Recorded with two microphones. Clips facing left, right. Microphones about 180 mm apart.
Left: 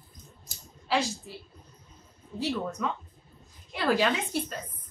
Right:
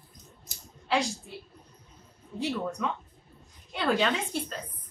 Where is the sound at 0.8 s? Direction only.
Centre (ahead or behind).